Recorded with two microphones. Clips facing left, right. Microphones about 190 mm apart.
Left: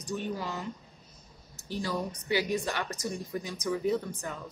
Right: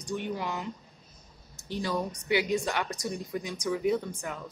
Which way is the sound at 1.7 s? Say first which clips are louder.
Right 2 dB; 20° right (ahead or behind).